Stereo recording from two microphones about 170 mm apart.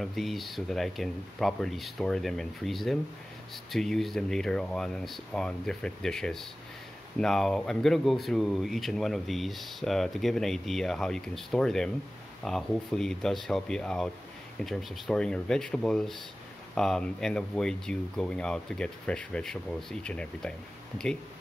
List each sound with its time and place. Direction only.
0.0 s speech: centre (ahead or behind)